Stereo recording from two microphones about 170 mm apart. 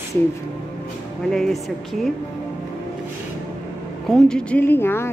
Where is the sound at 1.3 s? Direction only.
5° left (ahead or behind).